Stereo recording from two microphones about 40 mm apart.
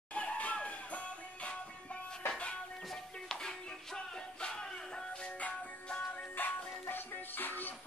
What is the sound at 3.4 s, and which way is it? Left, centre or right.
Music, centre.